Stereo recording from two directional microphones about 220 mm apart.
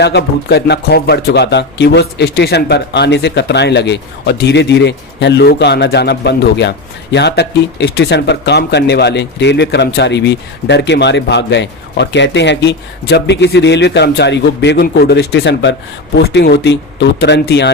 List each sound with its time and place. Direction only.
0.0 s speech: 50° left (ahead or behind)